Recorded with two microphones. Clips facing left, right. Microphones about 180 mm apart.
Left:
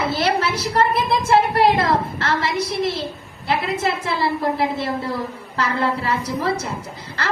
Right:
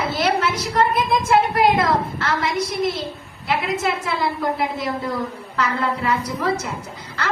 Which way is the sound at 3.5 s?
30° left (ahead or behind).